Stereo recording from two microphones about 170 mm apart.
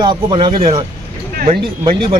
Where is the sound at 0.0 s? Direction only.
30° right (ahead or behind).